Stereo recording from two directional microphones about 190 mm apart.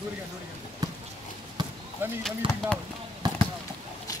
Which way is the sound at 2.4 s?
25° right (ahead or behind).